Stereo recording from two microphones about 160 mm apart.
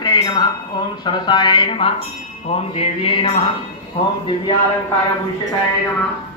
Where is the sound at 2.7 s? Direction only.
40° left (ahead or behind).